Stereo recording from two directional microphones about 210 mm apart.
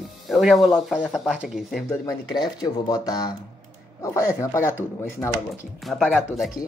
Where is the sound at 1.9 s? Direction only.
15° left (ahead or behind).